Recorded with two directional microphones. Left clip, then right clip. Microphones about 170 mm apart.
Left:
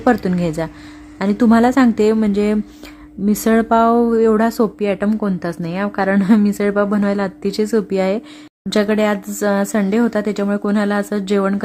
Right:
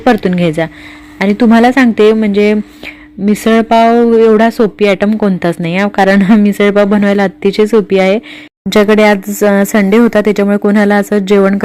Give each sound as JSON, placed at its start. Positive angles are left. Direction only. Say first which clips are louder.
{"t": 0.1, "sound": "speech", "louder": "right 7 dB", "side_deg": -15}
{"t": 8.7, "sound": "speech", "louder": "right 9 dB", "side_deg": -25}